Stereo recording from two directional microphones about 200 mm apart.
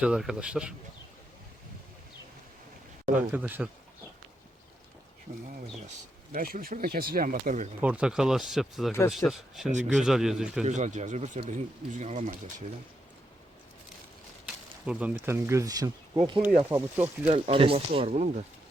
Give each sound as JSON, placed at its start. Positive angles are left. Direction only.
{"t": 0.0, "sound": "speech", "side_deg": -5}
{"t": 3.2, "sound": "speech", "side_deg": -10}
{"t": 6.3, "sound": "speech", "side_deg": -45}
{"t": 7.8, "sound": "speech", "side_deg": -5}
{"t": 10.6, "sound": "speech", "side_deg": -35}
{"t": 14.4, "sound": "speech", "side_deg": -5}
{"t": 17.2, "sound": "speech", "side_deg": -30}